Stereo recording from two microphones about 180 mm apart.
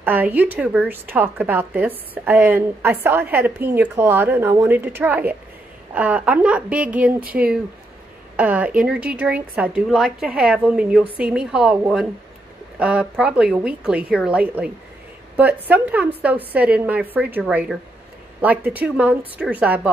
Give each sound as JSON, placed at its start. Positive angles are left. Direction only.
{"t": 0.0, "sound": "a woman's voice", "side_deg": -10}